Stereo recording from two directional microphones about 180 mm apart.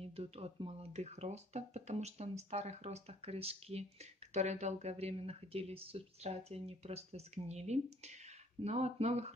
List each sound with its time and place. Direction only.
0.0 s speech: 35° right (ahead or behind)